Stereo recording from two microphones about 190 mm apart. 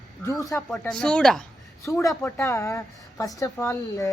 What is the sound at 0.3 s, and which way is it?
Speech, 20° left (ahead or behind).